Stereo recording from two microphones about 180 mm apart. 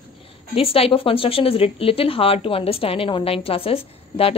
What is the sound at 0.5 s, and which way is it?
Speech, 30° left (ahead or behind).